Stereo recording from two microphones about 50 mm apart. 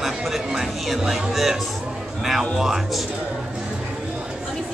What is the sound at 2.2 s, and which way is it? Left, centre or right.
Speech, centre.